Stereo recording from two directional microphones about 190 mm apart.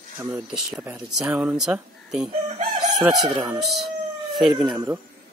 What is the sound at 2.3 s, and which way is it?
Chicken, 35° right (ahead or behind).